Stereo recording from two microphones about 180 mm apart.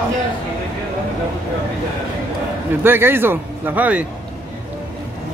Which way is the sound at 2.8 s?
10° right (ahead or behind).